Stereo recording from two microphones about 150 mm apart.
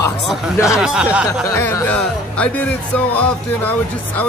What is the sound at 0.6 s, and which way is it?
Speech, 5° right (ahead or behind).